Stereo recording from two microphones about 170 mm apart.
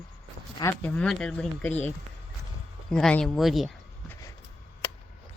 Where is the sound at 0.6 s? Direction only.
10° left (ahead or behind).